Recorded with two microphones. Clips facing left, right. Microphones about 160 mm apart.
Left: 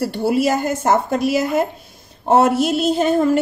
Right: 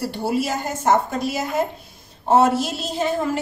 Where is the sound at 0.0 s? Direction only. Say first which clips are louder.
Left 5 dB; 60° left (ahead or behind).